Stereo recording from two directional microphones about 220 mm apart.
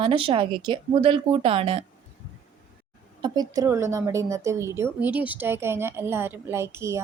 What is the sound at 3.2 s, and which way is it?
A woman's voice, 20° right (ahead or behind).